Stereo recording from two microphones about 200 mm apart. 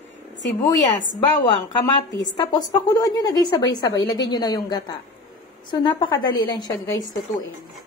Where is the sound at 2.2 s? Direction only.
20° left (ahead or behind).